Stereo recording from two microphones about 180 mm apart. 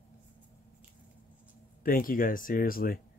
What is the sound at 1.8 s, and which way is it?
Speech, 50° left (ahead or behind).